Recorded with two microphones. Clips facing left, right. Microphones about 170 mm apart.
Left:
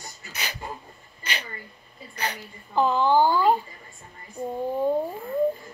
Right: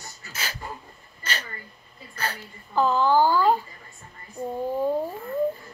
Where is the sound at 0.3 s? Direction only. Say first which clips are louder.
Even; 15° left (ahead or behind).